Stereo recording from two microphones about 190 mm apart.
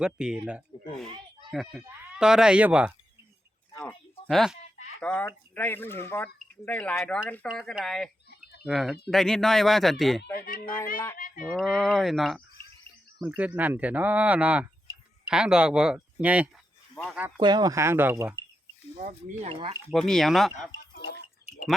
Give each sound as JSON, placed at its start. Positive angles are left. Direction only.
{"t": 0.0, "sound": "speech", "side_deg": -5}
{"t": 3.7, "sound": "a sound", "side_deg": 5}
{"t": 4.3, "sound": "speech", "side_deg": 0}
{"t": 10.3, "sound": "speech", "side_deg": 50}
{"t": 10.9, "sound": "speech", "side_deg": 15}
{"t": 11.4, "sound": "speech", "side_deg": 0}
{"t": 16.9, "sound": "speech", "side_deg": 5}
{"t": 17.4, "sound": "speech", "side_deg": -20}
{"t": 18.9, "sound": "speech", "side_deg": -35}
{"t": 19.9, "sound": "speech", "side_deg": 0}
{"t": 20.9, "sound": "a sound", "side_deg": 60}